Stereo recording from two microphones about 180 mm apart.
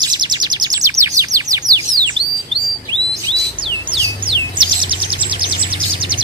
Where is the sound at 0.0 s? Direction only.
25° right (ahead or behind).